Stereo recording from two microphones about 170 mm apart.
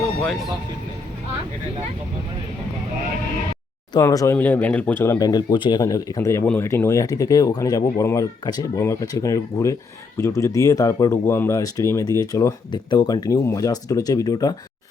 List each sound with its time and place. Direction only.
0.2 s speech: centre (ahead or behind)
4.0 s speech: 20° left (ahead or behind)
5.2 s speech: 25° left (ahead or behind)